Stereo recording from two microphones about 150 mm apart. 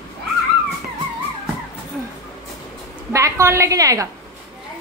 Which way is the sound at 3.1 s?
20° right (ahead or behind).